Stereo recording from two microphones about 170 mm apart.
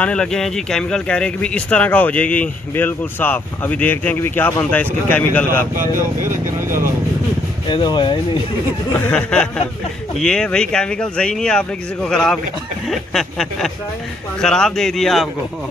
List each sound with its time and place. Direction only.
0.0 s speech: 5° left (ahead or behind)
5.8 s speech: 15° right (ahead or behind)
7.6 s speech: 25° left (ahead or behind)
8.9 s speech: 5° left (ahead or behind)